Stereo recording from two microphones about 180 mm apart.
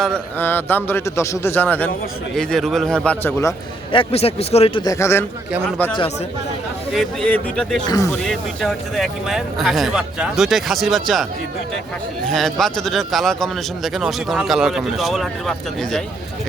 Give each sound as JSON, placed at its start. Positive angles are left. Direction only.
{"t": 0.0, "sound": "a man's voice", "side_deg": 5}
{"t": 3.9, "sound": "a man's voice", "side_deg": 35}
{"t": 6.9, "sound": "a man's voice", "side_deg": 5}
{"t": 7.9, "sound": "a man's voice", "side_deg": 20}
{"t": 8.3, "sound": "a man's voice", "side_deg": 0}
{"t": 12.3, "sound": "a man's voice", "side_deg": 0}